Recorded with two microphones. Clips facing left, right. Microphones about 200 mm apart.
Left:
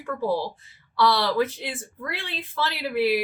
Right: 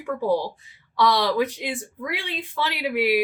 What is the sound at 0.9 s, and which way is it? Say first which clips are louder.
Speech: right 1 dB; 15° right (ahead or behind).